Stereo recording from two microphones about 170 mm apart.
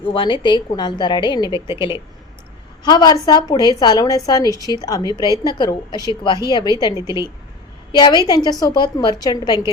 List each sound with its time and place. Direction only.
0.0 s a woman's voice: 30° left (ahead or behind)
2.8 s a woman's voice: 25° left (ahead or behind)
4.5 s a woman's voice: 20° right (ahead or behind)
4.8 s a woman's voice: 20° left (ahead or behind)